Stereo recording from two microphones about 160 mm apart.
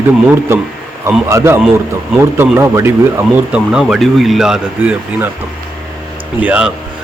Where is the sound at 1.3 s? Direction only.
20° right (ahead or behind).